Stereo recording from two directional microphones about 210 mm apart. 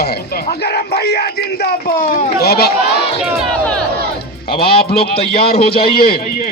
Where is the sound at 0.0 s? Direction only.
50° left (ahead or behind).